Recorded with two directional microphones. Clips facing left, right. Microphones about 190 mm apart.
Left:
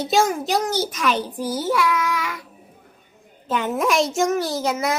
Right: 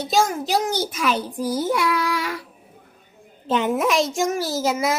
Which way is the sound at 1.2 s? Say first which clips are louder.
Right 2 dB; 10° left (ahead or behind).